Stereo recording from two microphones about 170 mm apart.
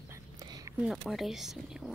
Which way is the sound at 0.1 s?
20° right (ahead or behind).